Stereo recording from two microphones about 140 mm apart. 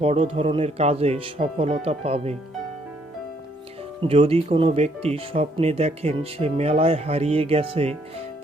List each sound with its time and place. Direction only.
0.0 s speech: 45° right (ahead or behind)
4.0 s speech: 45° right (ahead or behind)